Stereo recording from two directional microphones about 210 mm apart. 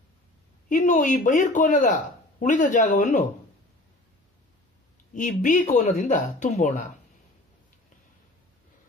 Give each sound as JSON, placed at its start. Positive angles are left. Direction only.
{"t": 0.7, "sound": "speech", "side_deg": 35}
{"t": 5.1, "sound": "speech", "side_deg": 35}